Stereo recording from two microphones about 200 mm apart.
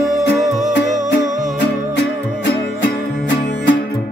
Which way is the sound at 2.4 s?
65° left (ahead or behind).